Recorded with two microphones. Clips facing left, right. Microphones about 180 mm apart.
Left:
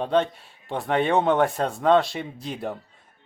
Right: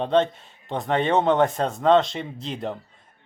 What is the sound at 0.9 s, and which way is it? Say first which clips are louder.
Speech: even; 10° left (ahead or behind).